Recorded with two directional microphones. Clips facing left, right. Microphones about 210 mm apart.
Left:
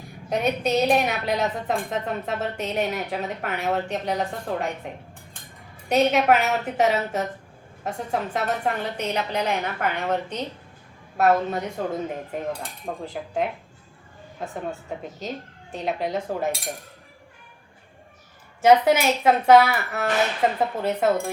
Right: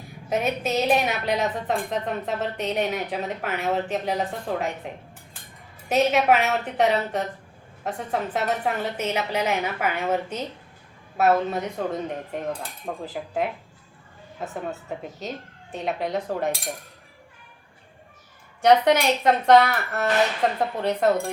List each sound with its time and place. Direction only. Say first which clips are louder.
0.3 s a woman's voice: left 2 dB; 5° right (ahead or behind)
5.9 s a woman's voice: left 1 dB; centre (ahead or behind)
14.5 s a woman's voice: even; centre (ahead or behind)
18.6 s a woman's voice: left 1 dB; 5° left (ahead or behind)